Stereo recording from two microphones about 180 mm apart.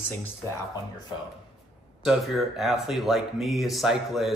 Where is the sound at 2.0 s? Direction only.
Centre (ahead or behind).